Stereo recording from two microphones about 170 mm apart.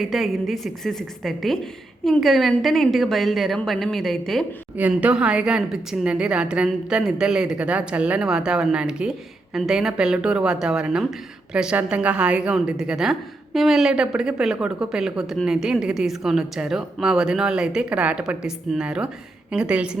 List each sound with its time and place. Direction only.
0.0 s a woman's voice: centre (ahead or behind)